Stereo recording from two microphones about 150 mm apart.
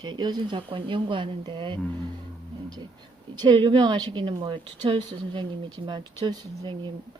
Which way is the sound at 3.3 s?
30° right (ahead or behind).